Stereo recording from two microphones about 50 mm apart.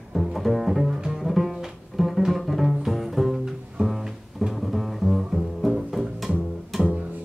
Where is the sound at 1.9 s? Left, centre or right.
Centre.